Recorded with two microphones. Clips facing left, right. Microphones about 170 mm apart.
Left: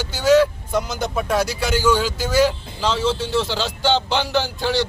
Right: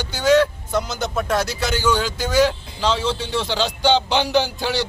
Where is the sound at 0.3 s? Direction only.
10° left (ahead or behind).